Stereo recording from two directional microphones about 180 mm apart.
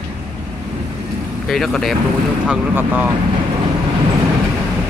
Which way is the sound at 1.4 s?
Centre (ahead or behind).